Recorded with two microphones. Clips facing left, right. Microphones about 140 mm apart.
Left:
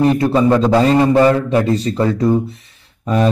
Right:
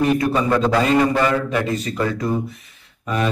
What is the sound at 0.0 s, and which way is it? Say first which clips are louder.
A man's voice: left 5 dB; 30° left (ahead or behind).